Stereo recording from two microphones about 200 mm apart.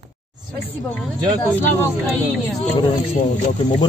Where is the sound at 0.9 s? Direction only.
10° left (ahead or behind).